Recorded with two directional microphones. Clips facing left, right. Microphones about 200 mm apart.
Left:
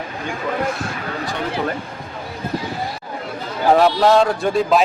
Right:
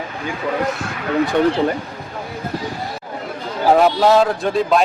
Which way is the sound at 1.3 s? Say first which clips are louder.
Right 12 dB; 50° right (ahead or behind).